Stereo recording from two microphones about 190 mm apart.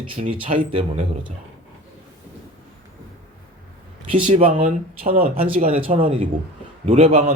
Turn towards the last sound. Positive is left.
turn(degrees=-30)  # may be behind; listen again after turning